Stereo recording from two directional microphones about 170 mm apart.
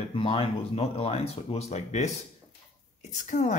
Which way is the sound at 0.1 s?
30° left (ahead or behind).